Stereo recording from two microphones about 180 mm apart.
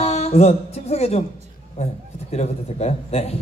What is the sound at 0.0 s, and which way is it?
Music, 35° left (ahead or behind).